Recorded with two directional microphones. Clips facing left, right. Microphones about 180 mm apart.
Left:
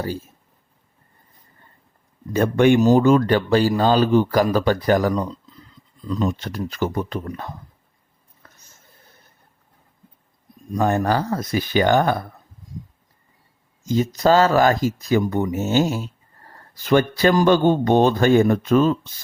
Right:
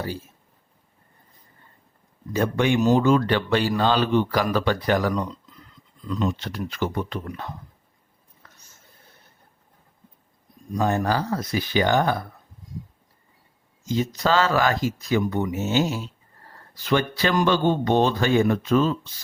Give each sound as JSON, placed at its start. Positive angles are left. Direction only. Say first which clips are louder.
{"t": 2.3, "sound": "speech", "louder": "left 6 dB", "side_deg": 50}
{"t": 10.8, "sound": "speech", "louder": "left 3 dB", "side_deg": 55}
{"t": 13.8, "sound": "speech", "louder": "left 6 dB", "side_deg": 45}